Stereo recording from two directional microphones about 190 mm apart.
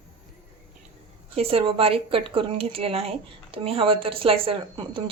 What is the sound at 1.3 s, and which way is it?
A woman's voice, 30° right (ahead or behind).